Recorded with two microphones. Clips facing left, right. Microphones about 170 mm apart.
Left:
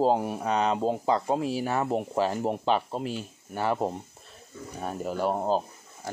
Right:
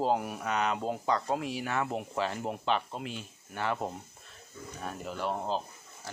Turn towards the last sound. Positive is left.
turn(degrees=45)  # may be behind; listen again after turning